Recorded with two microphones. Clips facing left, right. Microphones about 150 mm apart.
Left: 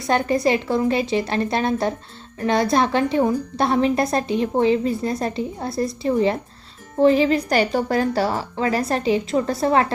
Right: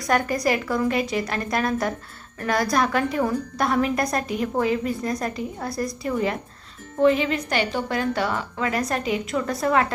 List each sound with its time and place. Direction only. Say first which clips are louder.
0.0 s a woman's voice: left 3 dB; 25° left (ahead or behind)